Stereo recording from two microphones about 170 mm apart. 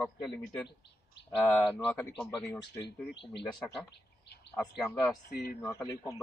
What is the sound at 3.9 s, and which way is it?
Bird, 90° left.